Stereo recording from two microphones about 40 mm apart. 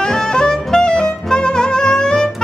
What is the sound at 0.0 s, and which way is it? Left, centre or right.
Saxophone, centre.